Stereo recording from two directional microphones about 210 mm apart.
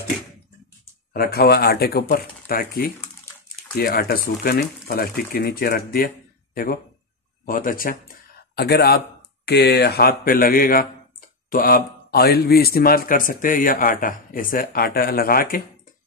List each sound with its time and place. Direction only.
1.1 s speech: 45° left (ahead or behind)